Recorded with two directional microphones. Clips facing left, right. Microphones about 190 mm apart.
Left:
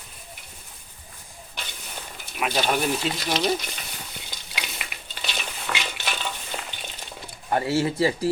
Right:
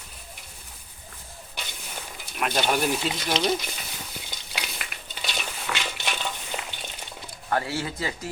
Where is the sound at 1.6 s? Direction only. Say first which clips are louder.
Even; 10° right (ahead or behind).